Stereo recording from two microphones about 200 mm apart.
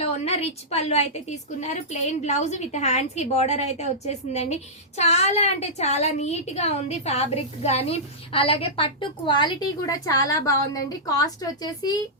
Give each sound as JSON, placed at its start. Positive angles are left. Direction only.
{"t": 0.0, "sound": "a woman's voice", "side_deg": 30}